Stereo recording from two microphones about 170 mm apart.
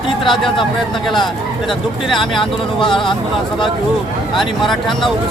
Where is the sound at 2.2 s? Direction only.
30° left (ahead or behind).